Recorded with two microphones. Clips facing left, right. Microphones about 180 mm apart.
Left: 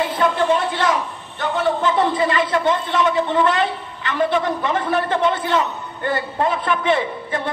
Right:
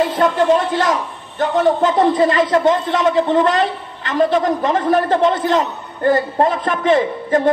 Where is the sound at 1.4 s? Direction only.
40° right (ahead or behind).